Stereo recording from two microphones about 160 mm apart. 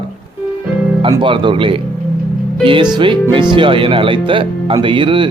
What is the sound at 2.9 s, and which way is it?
Speech, 30° right (ahead or behind).